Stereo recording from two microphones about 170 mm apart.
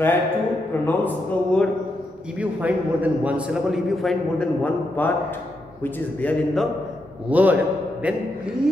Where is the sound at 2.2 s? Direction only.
10° right (ahead or behind).